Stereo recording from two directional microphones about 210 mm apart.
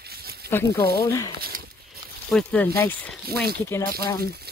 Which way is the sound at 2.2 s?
5° left (ahead or behind).